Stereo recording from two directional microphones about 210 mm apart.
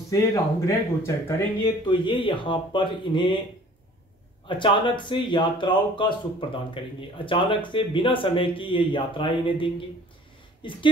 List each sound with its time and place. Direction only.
0.1 s speech: 15° left (ahead or behind)
4.5 s speech: 25° left (ahead or behind)